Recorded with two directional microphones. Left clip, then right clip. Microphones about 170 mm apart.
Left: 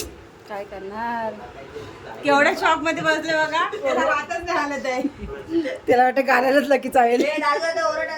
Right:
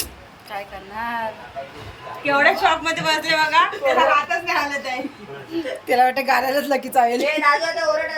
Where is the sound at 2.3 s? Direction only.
85° left; by 3.3 s 55° left (ahead or behind).